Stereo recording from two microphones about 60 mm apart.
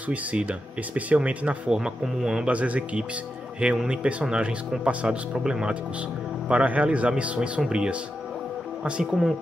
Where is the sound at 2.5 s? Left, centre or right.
Right.